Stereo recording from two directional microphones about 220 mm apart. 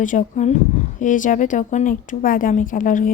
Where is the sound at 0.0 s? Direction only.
35° left (ahead or behind).